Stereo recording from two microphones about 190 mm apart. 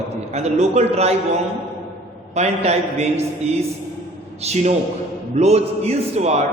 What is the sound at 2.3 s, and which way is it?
Speech, 35° right (ahead or behind).